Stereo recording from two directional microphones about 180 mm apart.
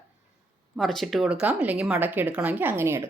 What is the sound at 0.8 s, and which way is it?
A woman's voice, centre (ahead or behind).